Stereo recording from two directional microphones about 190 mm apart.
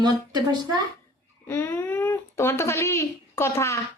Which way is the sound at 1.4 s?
10° left (ahead or behind).